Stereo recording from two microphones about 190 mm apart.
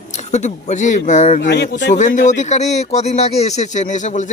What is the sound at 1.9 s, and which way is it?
Speech, 40° left (ahead or behind).